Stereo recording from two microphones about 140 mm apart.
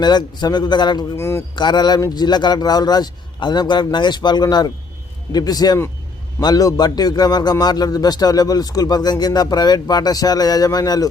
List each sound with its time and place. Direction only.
0.0 s a man's voice: 30° left (ahead or behind)
1.1 s a man's voice: 20° left (ahead or behind)
1.5 s a man's voice: 30° left (ahead or behind)